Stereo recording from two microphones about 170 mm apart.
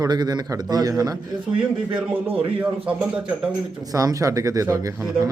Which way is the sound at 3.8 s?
20° right (ahead or behind).